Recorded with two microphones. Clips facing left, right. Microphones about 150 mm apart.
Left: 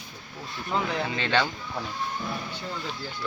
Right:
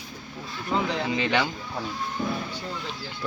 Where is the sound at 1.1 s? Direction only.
15° right (ahead or behind).